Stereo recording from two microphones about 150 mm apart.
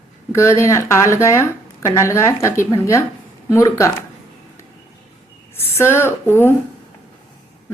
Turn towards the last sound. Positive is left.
turn(degrees=15)  # may be behind; listen again after turning